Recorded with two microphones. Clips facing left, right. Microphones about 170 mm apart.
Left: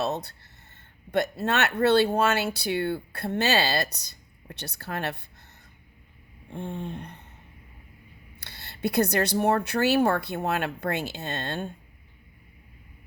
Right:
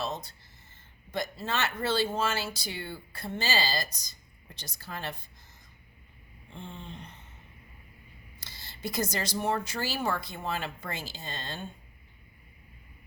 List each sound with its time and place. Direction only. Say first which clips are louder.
0.0 s speech: left 6 dB; 65° left (ahead or behind)
6.5 s speech: left 9 dB; 55° left (ahead or behind)
8.4 s speech: left 9 dB; 65° left (ahead or behind)